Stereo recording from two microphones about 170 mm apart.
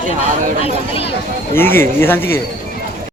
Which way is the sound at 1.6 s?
15° left (ahead or behind).